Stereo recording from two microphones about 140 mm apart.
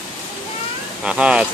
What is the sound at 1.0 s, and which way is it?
Speech, 10° right (ahead or behind).